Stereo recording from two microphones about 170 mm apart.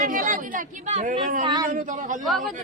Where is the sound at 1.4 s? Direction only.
25° right (ahead or behind).